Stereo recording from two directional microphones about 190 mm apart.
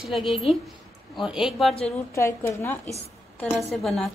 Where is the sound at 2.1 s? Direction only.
15° left (ahead or behind).